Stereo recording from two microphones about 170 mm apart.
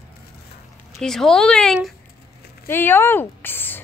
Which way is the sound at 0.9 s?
Centre (ahead or behind).